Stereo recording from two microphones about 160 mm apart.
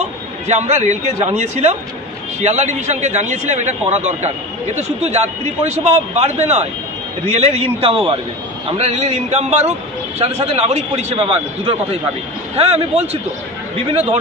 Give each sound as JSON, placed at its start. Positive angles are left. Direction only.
{"t": 0.5, "sound": "a man's voice", "side_deg": -45}